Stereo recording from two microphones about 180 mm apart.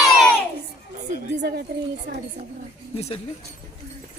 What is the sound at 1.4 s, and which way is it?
Speech, 65° right (ahead or behind).